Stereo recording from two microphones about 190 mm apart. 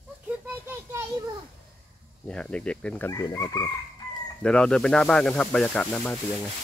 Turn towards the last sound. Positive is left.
turn(degrees=5)  # may be behind; listen again after turning